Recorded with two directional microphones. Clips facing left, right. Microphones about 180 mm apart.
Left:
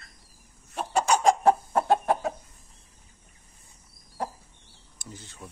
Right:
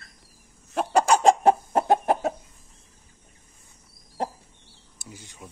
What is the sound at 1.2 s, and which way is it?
Chicken, 20° right (ahead or behind).